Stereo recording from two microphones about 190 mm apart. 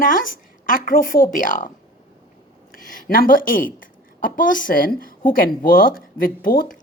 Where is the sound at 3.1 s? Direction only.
45° left (ahead or behind).